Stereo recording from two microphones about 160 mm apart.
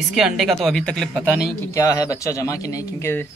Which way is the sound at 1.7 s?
20° left (ahead or behind).